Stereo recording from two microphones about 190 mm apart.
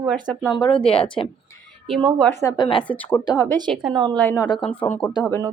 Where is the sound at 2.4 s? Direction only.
20° left (ahead or behind).